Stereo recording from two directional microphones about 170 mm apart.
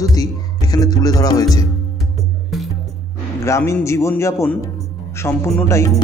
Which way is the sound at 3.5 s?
15° left (ahead or behind).